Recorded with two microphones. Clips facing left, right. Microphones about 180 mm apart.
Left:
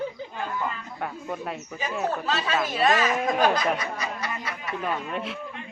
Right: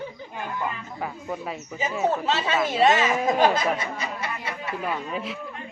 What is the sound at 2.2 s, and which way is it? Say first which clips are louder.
Speech: right 2 dB; 25° right (ahead or behind).